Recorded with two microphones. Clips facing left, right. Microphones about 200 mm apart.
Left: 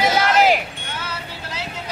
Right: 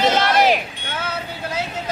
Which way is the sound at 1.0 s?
50° right (ahead or behind).